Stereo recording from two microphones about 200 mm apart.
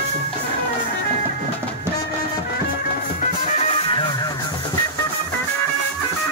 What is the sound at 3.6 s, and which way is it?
Music, 30° left (ahead or behind).